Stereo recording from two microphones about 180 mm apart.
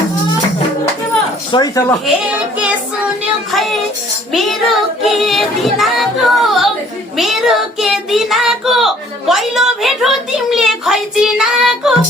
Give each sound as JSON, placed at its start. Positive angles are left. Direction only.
{"t": 1.5, "sound": "speech", "side_deg": 20}
{"t": 3.5, "sound": "child singing", "side_deg": 0}